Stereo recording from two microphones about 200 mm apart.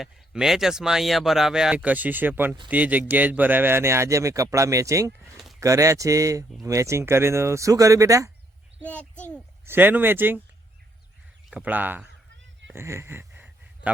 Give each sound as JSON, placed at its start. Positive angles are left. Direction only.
{"t": 0.0, "sound": "speech", "side_deg": 0}
{"t": 5.2, "sound": "a sound", "side_deg": 0}
{"t": 5.5, "sound": "speech", "side_deg": -15}
{"t": 8.8, "sound": "a child's voice", "side_deg": 10}
{"t": 9.6, "sound": "speech", "side_deg": -10}
{"t": 11.5, "sound": "speech", "side_deg": -10}
{"t": 12.6, "sound": "a sound", "side_deg": -15}